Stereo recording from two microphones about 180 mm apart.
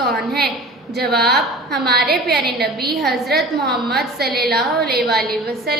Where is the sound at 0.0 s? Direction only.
Centre (ahead or behind).